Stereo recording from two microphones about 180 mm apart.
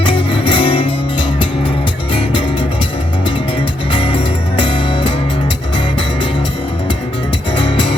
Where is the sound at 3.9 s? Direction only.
30° left (ahead or behind).